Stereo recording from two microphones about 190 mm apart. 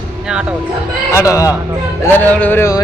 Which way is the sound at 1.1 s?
15° left (ahead or behind).